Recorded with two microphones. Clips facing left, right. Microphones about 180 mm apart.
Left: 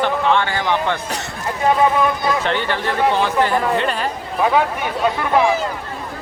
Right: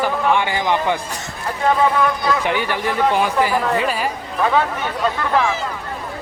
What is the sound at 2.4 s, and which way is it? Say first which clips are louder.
A man's voice: even; 10° right (ahead or behind).